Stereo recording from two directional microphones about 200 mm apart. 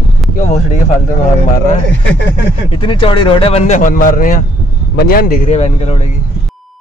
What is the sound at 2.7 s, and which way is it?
A man's voice, 25° left (ahead or behind).